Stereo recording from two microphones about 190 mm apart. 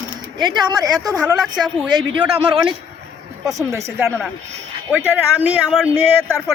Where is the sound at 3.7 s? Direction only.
15° right (ahead or behind).